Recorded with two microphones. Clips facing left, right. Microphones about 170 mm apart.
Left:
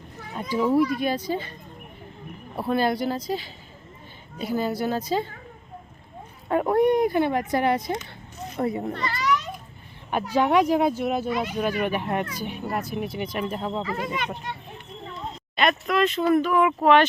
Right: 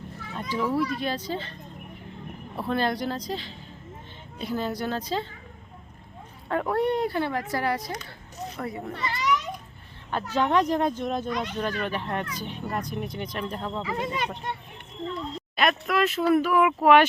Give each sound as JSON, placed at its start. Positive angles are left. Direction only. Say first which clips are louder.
{"t": 0.3, "sound": "speech", "louder": "left 5 dB", "side_deg": 10}
{"t": 2.6, "sound": "speech", "louder": "left 3 dB", "side_deg": 10}
{"t": 6.5, "sound": "a child's voice", "louder": "left 5 dB", "side_deg": 15}
{"t": 8.9, "sound": "a child's voice", "louder": "left 3 dB", "side_deg": -10}
{"t": 9.1, "sound": "children playing", "louder": "even", "side_deg": -20}
{"t": 10.1, "sound": "speech", "louder": "left 3 dB", "side_deg": 10}
{"t": 13.8, "sound": "speech", "louder": "even", "side_deg": -20}
{"t": 15.9, "sound": "speech", "louder": "left 1 dB", "side_deg": -5}